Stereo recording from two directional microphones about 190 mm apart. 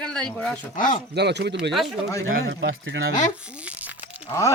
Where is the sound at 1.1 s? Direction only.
60° right (ahead or behind).